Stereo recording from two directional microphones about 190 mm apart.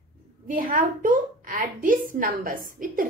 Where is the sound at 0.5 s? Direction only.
45° right (ahead or behind).